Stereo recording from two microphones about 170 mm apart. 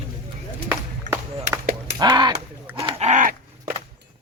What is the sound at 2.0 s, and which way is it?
Speech, 25° right (ahead or behind).